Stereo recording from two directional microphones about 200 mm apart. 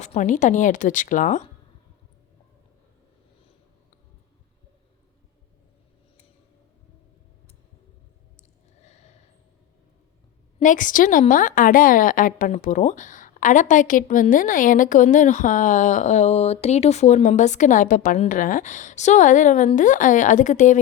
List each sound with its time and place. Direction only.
0.0 s a woman's voice: 35° left (ahead or behind)
8.4 s a sound: 35° left (ahead or behind)
10.6 s a woman's voice: 40° left (ahead or behind)